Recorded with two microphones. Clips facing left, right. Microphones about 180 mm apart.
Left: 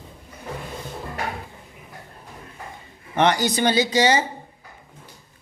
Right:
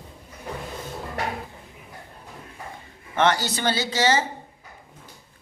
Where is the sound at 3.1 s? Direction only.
15° left (ahead or behind).